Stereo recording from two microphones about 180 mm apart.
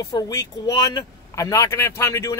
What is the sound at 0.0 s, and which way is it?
Speech, 20° left (ahead or behind).